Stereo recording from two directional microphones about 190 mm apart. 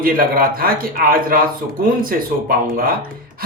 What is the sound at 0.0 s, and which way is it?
Speech, 50° right (ahead or behind).